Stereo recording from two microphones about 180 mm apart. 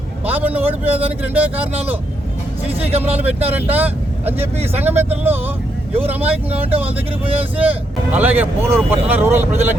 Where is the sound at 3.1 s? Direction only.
35° right (ahead or behind).